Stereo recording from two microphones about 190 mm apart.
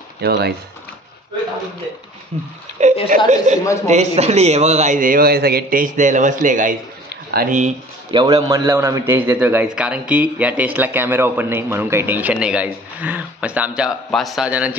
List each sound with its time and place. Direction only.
0.2 s speech: 60° right (ahead or behind)
2.3 s a man's voice: 30° right (ahead or behind)
8.1 s a man's voice: 25° right (ahead or behind); by 14.8 s 5° right (ahead or behind)